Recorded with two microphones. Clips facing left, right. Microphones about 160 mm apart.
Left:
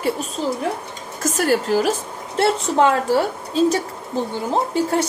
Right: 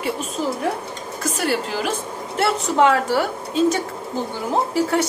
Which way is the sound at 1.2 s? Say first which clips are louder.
Left 4 dB; 40° left (ahead or behind).